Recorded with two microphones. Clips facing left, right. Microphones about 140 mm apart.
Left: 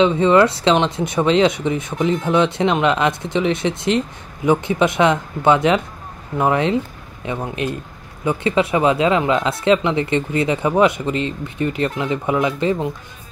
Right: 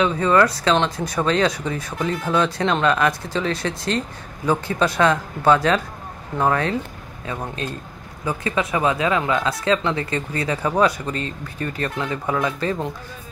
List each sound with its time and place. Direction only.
0.0 s speech: 20° left (ahead or behind)
8.3 s speech: 25° left (ahead or behind)